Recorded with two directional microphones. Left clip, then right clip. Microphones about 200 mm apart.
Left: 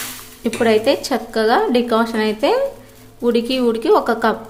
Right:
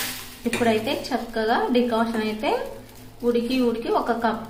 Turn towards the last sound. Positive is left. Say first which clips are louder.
# left 8 dB
turn(degrees=50)  # may be behind; listen again after turning